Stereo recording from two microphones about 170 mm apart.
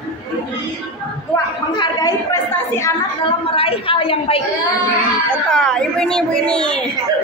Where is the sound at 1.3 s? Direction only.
25° left (ahead or behind).